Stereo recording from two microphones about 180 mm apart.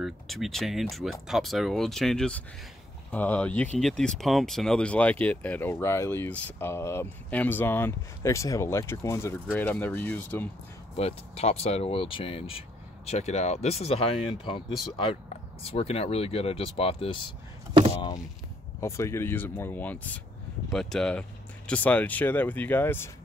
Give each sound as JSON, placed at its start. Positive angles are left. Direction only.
{"t": 0.0, "sound": "speech", "side_deg": 0}
{"t": 11.0, "sound": "speech", "side_deg": 35}
{"t": 15.6, "sound": "speech", "side_deg": 35}
{"t": 18.8, "sound": "speech", "side_deg": 15}